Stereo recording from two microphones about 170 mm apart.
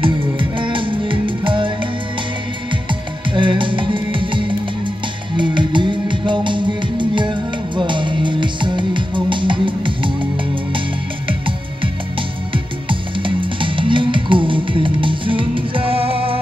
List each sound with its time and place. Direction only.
0.4 s music: 30° right (ahead or behind)
11.2 s music: 30° right (ahead or behind)